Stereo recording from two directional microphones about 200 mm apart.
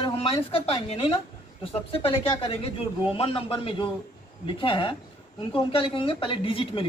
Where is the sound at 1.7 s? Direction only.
25° left (ahead or behind).